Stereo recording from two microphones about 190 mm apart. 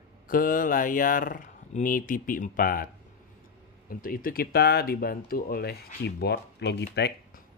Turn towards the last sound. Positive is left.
turn(degrees=60)  # may be behind; listen again after turning